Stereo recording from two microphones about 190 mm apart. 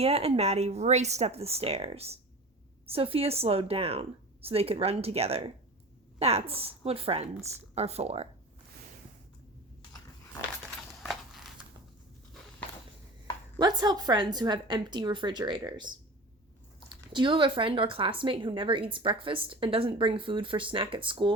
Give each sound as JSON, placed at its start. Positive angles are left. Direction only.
{"t": 0.0, "sound": "speech", "side_deg": -30}
{"t": 11.0, "sound": "a sound", "side_deg": 0}
{"t": 13.6, "sound": "speech", "side_deg": -20}